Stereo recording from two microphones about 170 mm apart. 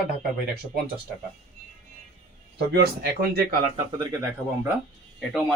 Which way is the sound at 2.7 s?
70° right (ahead or behind).